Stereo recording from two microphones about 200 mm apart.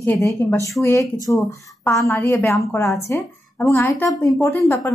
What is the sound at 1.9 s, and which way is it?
A woman's voice, 15° left (ahead or behind).